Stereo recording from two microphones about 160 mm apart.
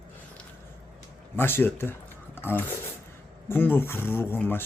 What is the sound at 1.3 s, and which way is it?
Speech, 15° left (ahead or behind).